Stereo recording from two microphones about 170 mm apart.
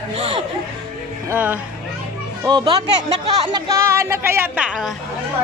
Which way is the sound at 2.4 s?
25° right (ahead or behind).